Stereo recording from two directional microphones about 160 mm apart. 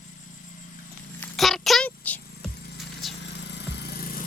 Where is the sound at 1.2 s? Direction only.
Centre (ahead or behind).